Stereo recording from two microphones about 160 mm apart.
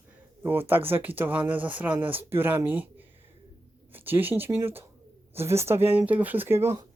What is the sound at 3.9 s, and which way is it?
Speech, 10° right (ahead or behind).